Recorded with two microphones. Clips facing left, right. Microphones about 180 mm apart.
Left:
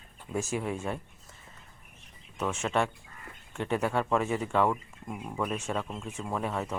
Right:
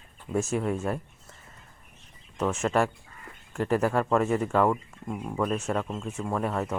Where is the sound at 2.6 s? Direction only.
5° right (ahead or behind).